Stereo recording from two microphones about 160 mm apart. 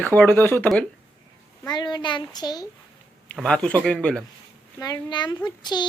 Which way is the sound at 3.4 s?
5° left (ahead or behind).